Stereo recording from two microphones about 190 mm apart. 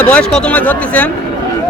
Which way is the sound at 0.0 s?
5° left (ahead or behind).